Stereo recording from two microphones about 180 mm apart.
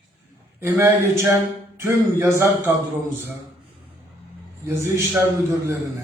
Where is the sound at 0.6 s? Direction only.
15° right (ahead or behind).